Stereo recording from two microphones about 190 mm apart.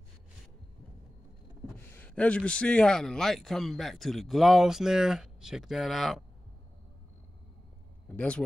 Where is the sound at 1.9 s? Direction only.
10° left (ahead or behind).